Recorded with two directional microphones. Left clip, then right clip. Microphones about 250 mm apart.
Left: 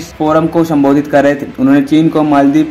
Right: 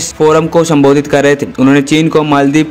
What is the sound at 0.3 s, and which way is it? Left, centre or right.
A man's voice, right.